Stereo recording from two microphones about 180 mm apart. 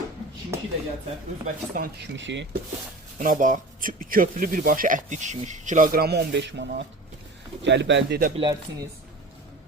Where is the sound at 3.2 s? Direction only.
45° right (ahead or behind); by 8.1 s 80° right.